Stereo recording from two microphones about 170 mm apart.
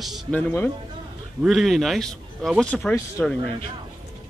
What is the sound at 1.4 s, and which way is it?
Speech, centre (ahead or behind).